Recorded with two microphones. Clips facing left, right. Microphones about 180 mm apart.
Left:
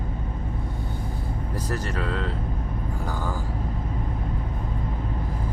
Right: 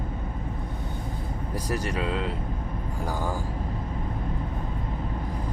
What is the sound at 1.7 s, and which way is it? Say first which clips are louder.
Speech: right 1 dB; 15° right (ahead or behind).